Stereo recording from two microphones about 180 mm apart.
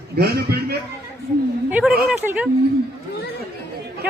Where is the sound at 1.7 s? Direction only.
5° right (ahead or behind).